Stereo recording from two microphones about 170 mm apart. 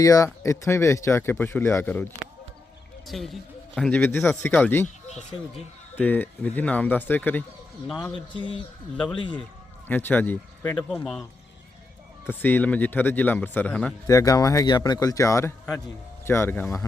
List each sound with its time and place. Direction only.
0.0 s speech: 20° left (ahead or behind)
3.1 s speech: centre (ahead or behind)
6.0 s speech: 10° left (ahead or behind)
8.1 s speech: 30° left (ahead or behind)
9.9 s speech: 10° left (ahead or behind)
12.2 s speech: 10° left (ahead or behind)
14.1 s speech: 20° left (ahead or behind)